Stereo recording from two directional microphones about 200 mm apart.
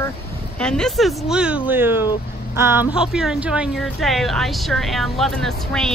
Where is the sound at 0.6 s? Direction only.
5° left (ahead or behind).